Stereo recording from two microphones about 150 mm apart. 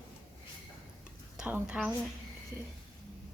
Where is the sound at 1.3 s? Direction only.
5° right (ahead or behind).